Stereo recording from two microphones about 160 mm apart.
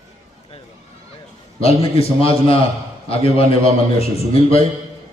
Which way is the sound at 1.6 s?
40° left (ahead or behind).